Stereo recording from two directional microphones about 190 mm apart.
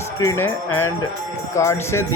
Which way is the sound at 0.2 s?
15° left (ahead or behind).